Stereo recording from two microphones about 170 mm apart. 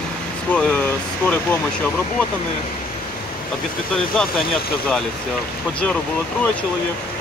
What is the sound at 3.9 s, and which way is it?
Speech, 5° left (ahead or behind).